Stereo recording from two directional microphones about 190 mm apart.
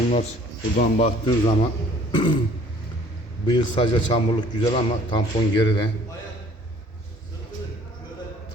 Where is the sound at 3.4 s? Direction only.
25° left (ahead or behind).